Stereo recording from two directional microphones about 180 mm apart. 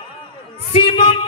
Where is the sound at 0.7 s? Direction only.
30° left (ahead or behind).